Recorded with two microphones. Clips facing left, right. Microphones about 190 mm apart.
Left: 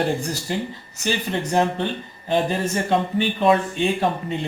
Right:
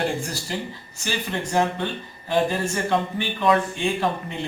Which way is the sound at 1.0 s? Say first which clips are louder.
Left 4 dB; 20° left (ahead or behind).